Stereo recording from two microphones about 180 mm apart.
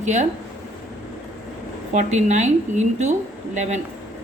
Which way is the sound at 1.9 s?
40° right (ahead or behind).